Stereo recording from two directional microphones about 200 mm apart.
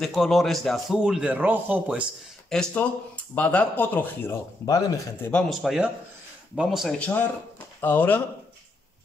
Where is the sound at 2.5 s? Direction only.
5° left (ahead or behind).